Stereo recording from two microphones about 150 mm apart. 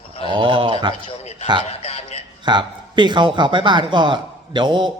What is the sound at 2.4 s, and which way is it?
A man's voice, 30° right (ahead or behind).